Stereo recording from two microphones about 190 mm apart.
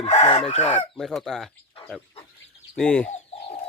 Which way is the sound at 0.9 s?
Centre (ahead or behind).